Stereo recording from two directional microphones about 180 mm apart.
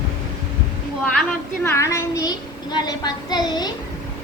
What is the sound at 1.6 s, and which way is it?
A woman's voice, 15° left (ahead or behind).